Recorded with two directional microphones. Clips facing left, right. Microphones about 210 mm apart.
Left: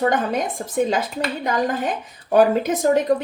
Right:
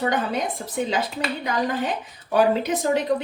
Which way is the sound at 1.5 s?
45° left (ahead or behind).